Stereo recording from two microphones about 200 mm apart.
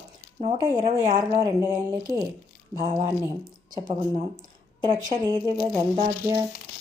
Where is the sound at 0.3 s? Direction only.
30° right (ahead or behind).